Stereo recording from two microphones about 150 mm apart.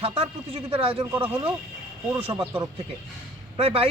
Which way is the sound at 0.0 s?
40° right (ahead or behind).